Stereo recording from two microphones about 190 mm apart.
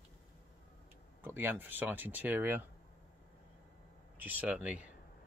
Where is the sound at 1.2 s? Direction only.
10° right (ahead or behind).